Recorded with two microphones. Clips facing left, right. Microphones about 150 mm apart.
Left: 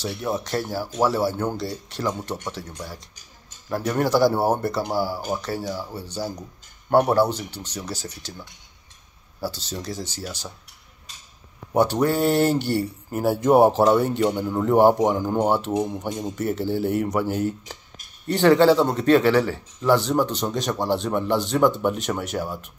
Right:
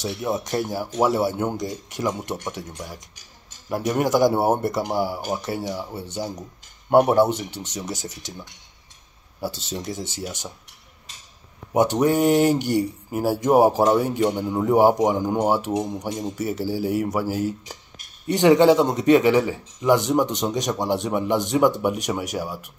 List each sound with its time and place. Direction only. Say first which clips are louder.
0.0 s speech: right 1 dB; 15° right (ahead or behind)
9.4 s speech: right 1 dB; 20° right (ahead or behind)
11.7 s speech: right 1 dB; 15° right (ahead or behind)
18.2 s speech: right 1 dB; 15° right (ahead or behind)